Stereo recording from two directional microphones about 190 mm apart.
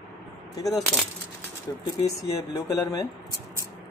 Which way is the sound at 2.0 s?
20° left (ahead or behind).